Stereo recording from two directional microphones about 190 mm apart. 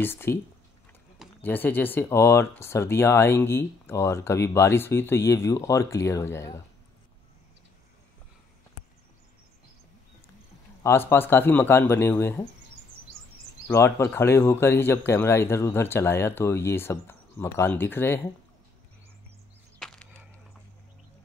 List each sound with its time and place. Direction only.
0.0 s speech: 10° left (ahead or behind)
1.4 s speech: 10° left (ahead or behind)
10.8 s speech: 15° left (ahead or behind)
13.7 s speech: 15° left (ahead or behind)
19.8 s a sound: 5° left (ahead or behind)